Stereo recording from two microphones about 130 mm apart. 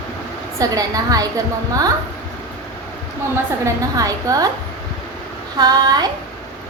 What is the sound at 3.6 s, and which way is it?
Speech, 25° right (ahead or behind).